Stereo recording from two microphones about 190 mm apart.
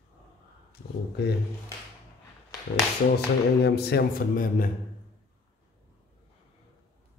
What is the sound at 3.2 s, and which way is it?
Speech, 55° left (ahead or behind).